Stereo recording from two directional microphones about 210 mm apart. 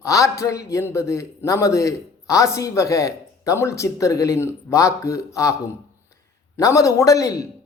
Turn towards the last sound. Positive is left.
turn(degrees=15)  # may be behind; listen again after turning